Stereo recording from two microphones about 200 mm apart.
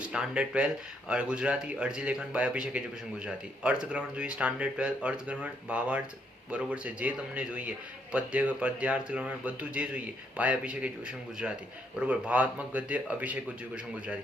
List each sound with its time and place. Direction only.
0.1 s a man's voice: 5° right (ahead or behind)